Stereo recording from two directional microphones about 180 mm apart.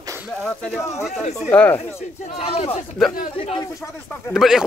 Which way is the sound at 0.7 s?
15° left (ahead or behind).